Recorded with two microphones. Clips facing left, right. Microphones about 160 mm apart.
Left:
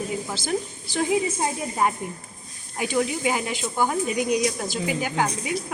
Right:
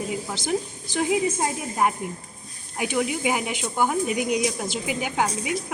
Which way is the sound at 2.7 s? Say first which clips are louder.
Left 1 dB; 15° right (ahead or behind).